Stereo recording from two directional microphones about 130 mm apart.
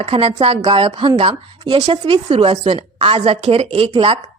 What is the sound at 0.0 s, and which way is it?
A woman's voice, 50° right (ahead or behind).